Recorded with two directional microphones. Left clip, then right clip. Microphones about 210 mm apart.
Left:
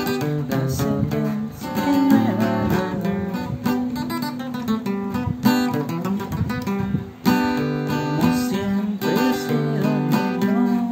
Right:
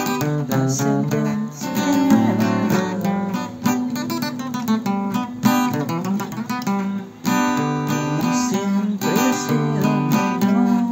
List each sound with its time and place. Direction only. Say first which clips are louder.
1.8 s music: even; 25° right (ahead or behind)
5.4 s music: right 1 dB; 25° right (ahead or behind)
7.2 s guitar: right 1 dB; 25° right (ahead or behind)
9.0 s music: right 1 dB; 20° right (ahead or behind)